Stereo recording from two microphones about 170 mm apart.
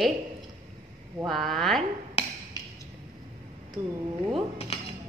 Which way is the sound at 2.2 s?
35° left (ahead or behind).